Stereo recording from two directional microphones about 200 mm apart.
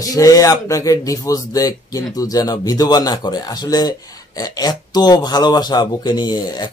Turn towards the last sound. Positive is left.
turn(degrees=20)  # may be behind; listen again after turning